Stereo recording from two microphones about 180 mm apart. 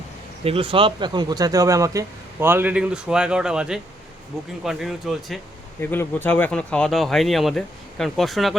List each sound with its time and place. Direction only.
0.4 s speech: 30° right (ahead or behind); by 5.4 s centre (ahead or behind)
5.8 s speech: 10° left (ahead or behind)